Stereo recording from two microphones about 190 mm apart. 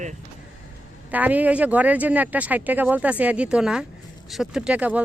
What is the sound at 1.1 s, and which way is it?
Speech, 10° right (ahead or behind).